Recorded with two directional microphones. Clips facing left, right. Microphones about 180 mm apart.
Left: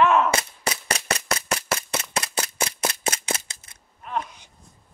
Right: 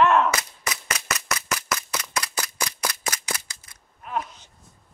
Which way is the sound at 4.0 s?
5° right (ahead or behind).